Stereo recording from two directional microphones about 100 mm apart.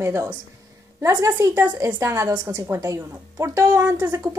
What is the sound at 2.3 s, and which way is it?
Speech, 40° right (ahead or behind).